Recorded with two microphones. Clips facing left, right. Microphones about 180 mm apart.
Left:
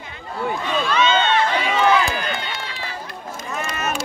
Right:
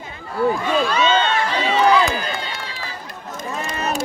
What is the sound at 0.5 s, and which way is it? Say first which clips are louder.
Crowd: right 3 dB; 35° right (ahead or behind).